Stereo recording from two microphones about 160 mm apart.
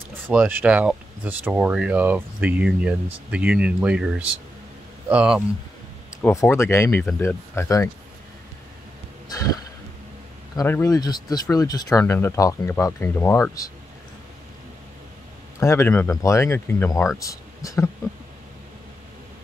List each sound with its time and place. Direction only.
0.3 s speech: 10° right (ahead or behind)
5.1 s speech: 5° right (ahead or behind)
6.2 s speech: 15° left (ahead or behind)
10.5 s speech: 20° left (ahead or behind)
15.6 s speech: 20° left (ahead or behind)